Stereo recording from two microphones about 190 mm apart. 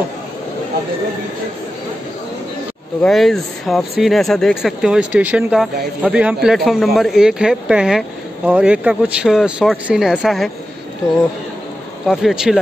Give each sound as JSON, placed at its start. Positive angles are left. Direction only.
{"t": 3.0, "sound": "speech", "side_deg": 0}
{"t": 12.1, "sound": "speech", "side_deg": 0}